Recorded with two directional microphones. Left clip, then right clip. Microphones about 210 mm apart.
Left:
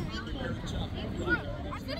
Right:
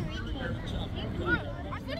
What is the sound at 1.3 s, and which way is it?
Speech, 55° left (ahead or behind).